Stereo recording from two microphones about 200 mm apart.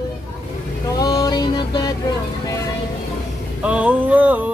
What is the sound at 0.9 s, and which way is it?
Music, 20° left (ahead or behind).